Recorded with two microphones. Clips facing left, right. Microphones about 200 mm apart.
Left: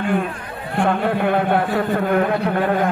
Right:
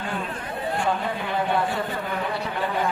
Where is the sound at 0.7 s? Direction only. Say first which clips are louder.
Left 9 dB; 60° left (ahead or behind).